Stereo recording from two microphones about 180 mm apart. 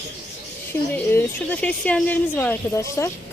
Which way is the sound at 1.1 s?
10° left (ahead or behind).